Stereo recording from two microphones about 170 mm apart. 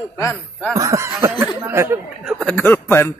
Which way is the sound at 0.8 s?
15° right (ahead or behind).